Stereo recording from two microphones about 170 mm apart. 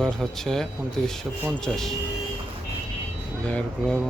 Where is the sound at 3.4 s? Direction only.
5° left (ahead or behind).